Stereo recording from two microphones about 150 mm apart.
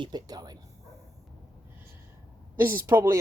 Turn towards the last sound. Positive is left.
turn(degrees=-15)  # may be behind; listen again after turning